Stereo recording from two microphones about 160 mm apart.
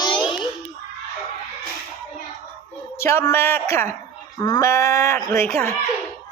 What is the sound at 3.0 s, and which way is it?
Speech, 15° left (ahead or behind).